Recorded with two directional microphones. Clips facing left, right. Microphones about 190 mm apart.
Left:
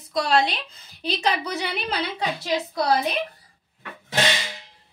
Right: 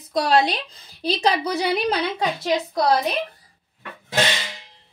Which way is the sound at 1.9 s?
50° right (ahead or behind).